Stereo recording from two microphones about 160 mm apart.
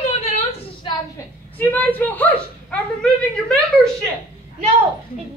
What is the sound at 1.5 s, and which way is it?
A woman's voice, 10° left (ahead or behind).